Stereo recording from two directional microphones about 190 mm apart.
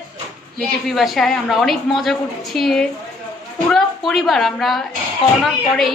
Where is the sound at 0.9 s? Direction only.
Centre (ahead or behind).